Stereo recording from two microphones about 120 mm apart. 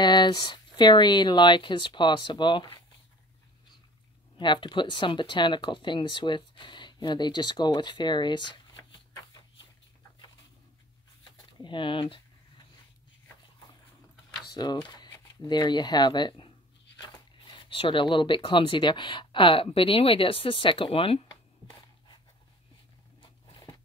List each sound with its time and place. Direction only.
0.0 s speech: 35° left (ahead or behind)
4.4 s speech: 40° left (ahead or behind)
11.6 s speech: 45° left (ahead or behind)
14.5 s speech: 35° left (ahead or behind)
23.2 s a sound: 40° left (ahead or behind)